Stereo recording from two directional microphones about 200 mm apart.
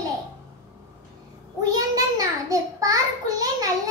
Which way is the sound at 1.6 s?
20° right (ahead or behind).